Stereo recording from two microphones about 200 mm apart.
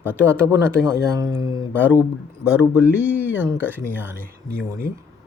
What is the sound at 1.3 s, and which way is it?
Speech, 20° left (ahead or behind).